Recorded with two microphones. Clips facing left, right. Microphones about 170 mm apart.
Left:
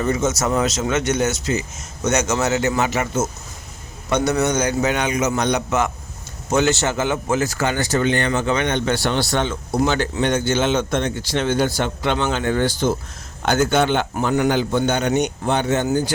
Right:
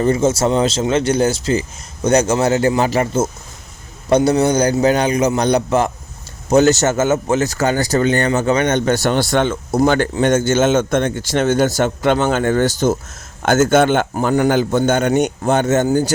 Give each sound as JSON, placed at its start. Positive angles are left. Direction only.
{"t": 0.0, "sound": "a man's voice", "side_deg": -30}